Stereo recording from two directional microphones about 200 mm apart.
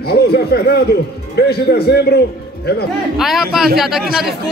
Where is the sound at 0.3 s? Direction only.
50° left (ahead or behind).